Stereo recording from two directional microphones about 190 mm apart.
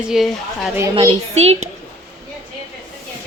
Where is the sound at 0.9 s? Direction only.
30° right (ahead or behind).